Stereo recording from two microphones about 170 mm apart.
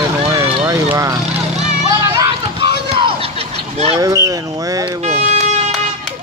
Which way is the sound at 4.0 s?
20° right (ahead or behind).